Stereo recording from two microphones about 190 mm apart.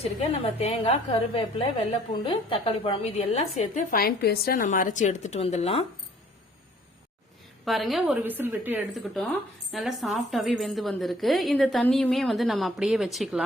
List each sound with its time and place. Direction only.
0.0 s a woman's voice: 30° left (ahead or behind)
3.9 s a woman's voice: 55° left (ahead or behind); by 5.8 s 35° left (ahead or behind)
7.6 s a woman's voice: centre (ahead or behind)